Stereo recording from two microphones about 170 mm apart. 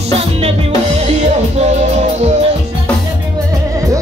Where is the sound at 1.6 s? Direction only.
40° right (ahead or behind).